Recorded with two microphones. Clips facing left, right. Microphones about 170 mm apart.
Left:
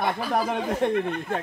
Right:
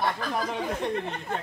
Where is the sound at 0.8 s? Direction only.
55° left (ahead or behind).